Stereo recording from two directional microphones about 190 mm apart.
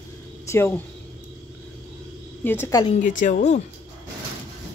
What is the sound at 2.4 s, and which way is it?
Speech, 10° left (ahead or behind).